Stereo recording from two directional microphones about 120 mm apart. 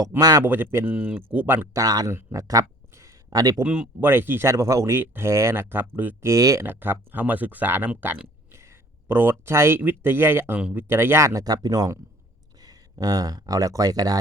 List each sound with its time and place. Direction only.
0.2 s speech: 35° right (ahead or behind)
0.4 s speech: 15° right (ahead or behind)
1.8 s speech: 30° right (ahead or behind)
2.1 s a sound: 25° right (ahead or behind)
3.6 s speech: 10° right (ahead or behind)
6.3 s speech: 30° right (ahead or behind)
6.7 s speech: 15° right (ahead or behind)